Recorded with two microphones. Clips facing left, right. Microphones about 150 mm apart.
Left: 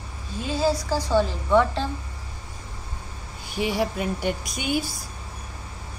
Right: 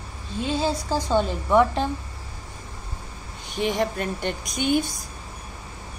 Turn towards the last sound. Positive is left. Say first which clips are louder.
# right 4 dB
turn(degrees=5)  # may be behind; listen again after turning